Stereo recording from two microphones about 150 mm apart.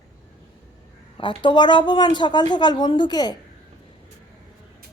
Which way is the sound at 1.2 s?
30° left (ahead or behind).